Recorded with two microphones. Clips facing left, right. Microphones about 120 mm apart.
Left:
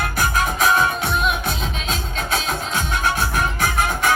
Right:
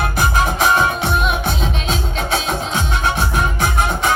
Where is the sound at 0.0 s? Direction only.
30° right (ahead or behind).